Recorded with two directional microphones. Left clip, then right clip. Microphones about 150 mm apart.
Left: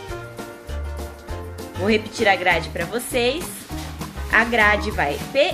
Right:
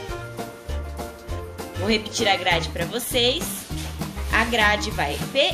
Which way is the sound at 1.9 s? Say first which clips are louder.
Left 3 dB; 45° left (ahead or behind).